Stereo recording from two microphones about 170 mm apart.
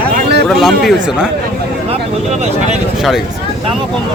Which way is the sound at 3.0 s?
Centre (ahead or behind).